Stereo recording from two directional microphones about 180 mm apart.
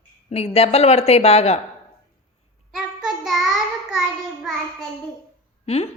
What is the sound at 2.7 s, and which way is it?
Child singing, centre (ahead or behind).